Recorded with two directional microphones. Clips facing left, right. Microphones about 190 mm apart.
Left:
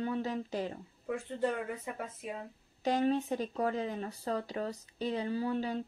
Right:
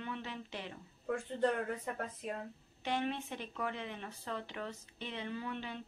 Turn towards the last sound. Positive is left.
turn(degrees=40)  # may be behind; listen again after turning